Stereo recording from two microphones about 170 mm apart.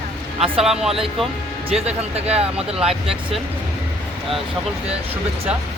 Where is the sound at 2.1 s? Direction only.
35° right (ahead or behind).